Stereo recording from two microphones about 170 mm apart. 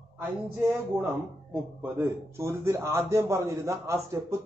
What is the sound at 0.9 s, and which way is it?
A man's voice, 15° right (ahead or behind).